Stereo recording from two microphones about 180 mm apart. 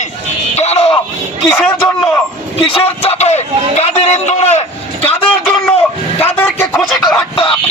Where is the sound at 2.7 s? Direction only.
30° left (ahead or behind).